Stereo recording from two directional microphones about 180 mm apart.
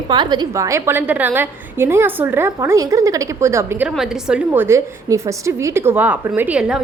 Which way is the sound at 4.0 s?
5° right (ahead or behind).